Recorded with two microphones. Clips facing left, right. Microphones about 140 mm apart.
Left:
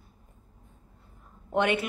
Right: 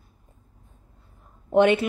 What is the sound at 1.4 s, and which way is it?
Speech, 25° right (ahead or behind).